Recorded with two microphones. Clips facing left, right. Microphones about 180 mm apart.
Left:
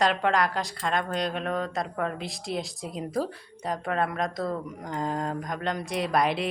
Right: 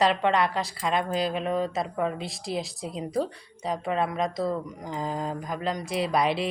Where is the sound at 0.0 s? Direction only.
Centre (ahead or behind).